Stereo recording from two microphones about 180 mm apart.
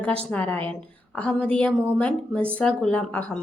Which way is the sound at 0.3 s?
10° left (ahead or behind).